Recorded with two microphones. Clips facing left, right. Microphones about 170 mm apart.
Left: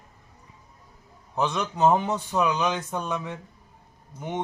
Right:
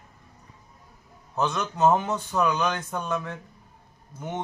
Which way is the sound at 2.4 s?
10° left (ahead or behind).